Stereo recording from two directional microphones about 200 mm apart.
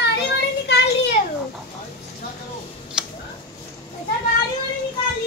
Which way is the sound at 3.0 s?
5° right (ahead or behind).